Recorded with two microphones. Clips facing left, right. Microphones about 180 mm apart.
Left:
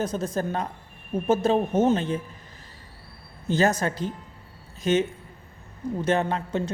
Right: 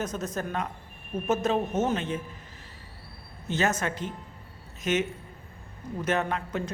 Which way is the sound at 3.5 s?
35° left (ahead or behind).